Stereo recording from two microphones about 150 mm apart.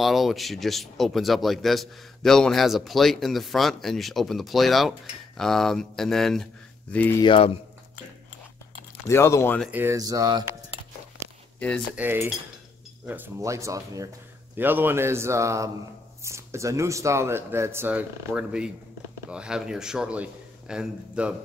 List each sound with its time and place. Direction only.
0.0 s speech: centre (ahead or behind)
7.2 s speech: 35° left (ahead or behind)
9.0 s speech: 20° left (ahead or behind)
9.7 s speech: 15° right (ahead or behind)
9.9 s speech: 25° right (ahead or behind)
11.9 s speech: 15° right (ahead or behind)